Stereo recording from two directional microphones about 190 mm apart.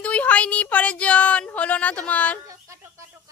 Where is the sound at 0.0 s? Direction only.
5° left (ahead or behind).